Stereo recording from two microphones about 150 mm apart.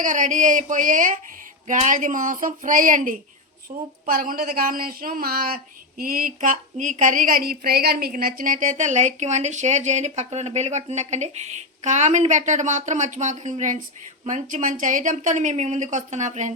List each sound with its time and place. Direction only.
0.0 s speech: 60° right (ahead or behind)
3.7 s a woman's voice: 45° right (ahead or behind)
4.0 s a woman's voice: 75° right (ahead or behind)
6.0 s a woman's voice: 70° right (ahead or behind); by 16.5 s 50° right (ahead or behind)